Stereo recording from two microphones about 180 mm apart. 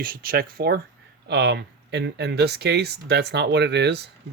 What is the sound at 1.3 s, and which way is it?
Speech, 70° right (ahead or behind).